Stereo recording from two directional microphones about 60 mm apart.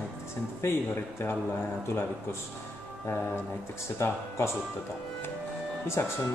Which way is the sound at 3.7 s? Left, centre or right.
Left.